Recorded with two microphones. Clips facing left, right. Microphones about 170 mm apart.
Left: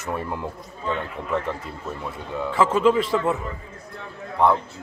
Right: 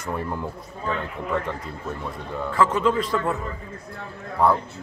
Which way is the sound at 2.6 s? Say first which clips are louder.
Left 3 dB; 20° left (ahead or behind).